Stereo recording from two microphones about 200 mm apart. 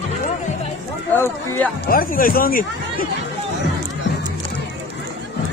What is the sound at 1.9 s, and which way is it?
Speech, 45° left (ahead or behind).